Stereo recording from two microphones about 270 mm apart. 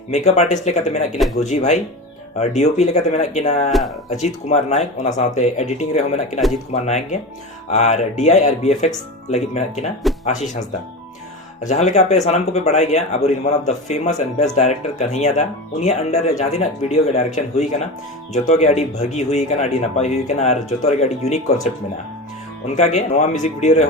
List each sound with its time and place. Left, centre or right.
0.1 s speech: left
3.7 s speech: centre
4.1 s speech: left